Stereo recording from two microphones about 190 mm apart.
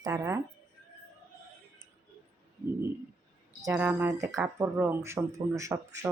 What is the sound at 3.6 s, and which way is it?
Speech, 15° right (ahead or behind).